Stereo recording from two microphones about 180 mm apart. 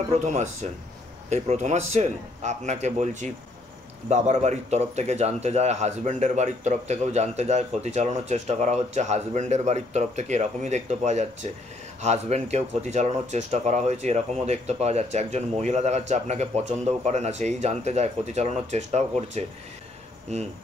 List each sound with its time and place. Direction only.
0.1 s speech: 40° right (ahead or behind)